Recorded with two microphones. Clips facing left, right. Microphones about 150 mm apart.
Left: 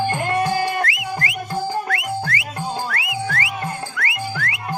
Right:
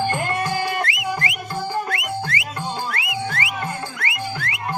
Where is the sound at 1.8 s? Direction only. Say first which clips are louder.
Left 2 dB; 25° right (ahead or behind).